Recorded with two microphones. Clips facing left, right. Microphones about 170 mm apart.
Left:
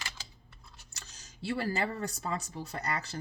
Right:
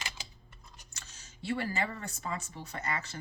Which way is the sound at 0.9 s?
35° left (ahead or behind).